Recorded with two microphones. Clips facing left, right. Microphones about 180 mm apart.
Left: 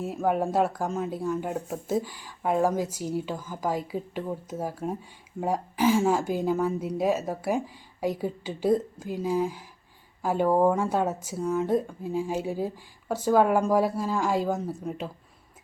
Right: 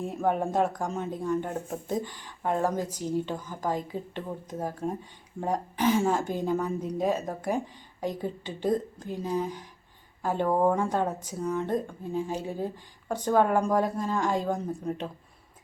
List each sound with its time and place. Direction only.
0.0 s speech: 5° left (ahead or behind)